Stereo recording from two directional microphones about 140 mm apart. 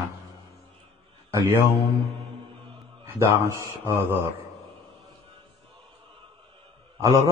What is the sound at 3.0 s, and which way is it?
Speech, 20° right (ahead or behind).